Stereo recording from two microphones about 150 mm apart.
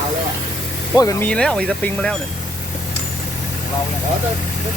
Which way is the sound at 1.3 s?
5° left (ahead or behind).